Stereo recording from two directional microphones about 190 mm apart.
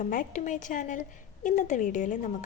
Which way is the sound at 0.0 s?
40° left (ahead or behind).